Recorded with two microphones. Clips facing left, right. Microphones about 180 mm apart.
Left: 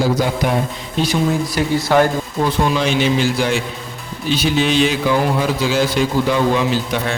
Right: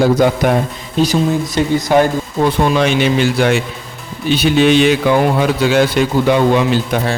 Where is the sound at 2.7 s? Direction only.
60° right (ahead or behind).